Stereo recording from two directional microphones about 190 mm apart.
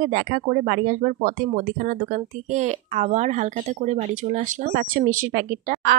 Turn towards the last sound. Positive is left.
turn(degrees=-45)  # may be behind; listen again after turning